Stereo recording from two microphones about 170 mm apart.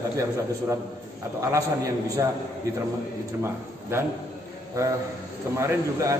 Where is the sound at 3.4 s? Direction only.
15° right (ahead or behind).